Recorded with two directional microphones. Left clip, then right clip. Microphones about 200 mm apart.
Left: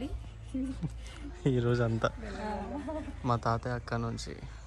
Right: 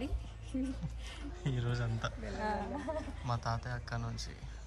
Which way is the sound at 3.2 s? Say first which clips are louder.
Left 10 dB; 10° right (ahead or behind).